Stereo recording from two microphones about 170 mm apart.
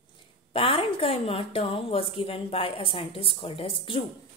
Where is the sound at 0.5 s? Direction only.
30° left (ahead or behind).